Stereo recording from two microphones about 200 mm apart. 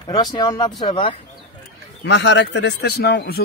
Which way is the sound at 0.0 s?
20° left (ahead or behind).